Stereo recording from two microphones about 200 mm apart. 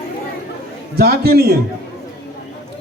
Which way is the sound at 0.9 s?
50° right (ahead or behind).